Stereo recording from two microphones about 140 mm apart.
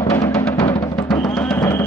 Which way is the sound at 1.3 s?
5° left (ahead or behind).